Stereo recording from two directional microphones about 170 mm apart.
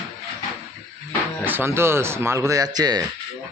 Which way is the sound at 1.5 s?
15° right (ahead or behind).